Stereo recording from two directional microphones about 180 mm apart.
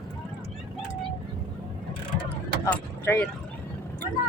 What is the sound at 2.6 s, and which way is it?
Speech, 10° left (ahead or behind).